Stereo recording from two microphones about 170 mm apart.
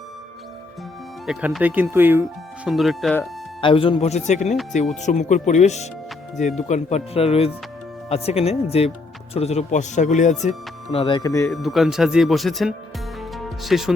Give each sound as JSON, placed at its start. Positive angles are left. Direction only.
{"t": 1.3, "sound": "speech", "side_deg": -5}
{"t": 2.6, "sound": "speech", "side_deg": 0}
{"t": 3.6, "sound": "speech", "side_deg": 30}
{"t": 10.9, "sound": "speech", "side_deg": 30}
{"t": 11.4, "sound": "speech", "side_deg": 0}
{"t": 13.3, "sound": "music", "side_deg": 0}